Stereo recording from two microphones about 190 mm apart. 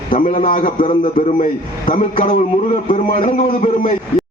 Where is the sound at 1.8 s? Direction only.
45° left (ahead or behind).